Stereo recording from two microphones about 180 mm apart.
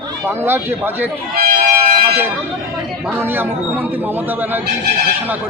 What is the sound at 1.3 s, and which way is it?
Speech, 55° right (ahead or behind).